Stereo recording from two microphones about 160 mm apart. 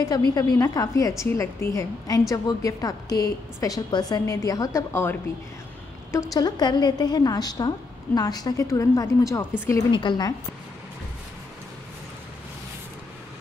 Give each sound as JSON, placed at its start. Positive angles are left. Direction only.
{"t": 0.3, "sound": "a woman's voice", "side_deg": 25}
{"t": 6.1, "sound": "a woman's voice", "side_deg": 20}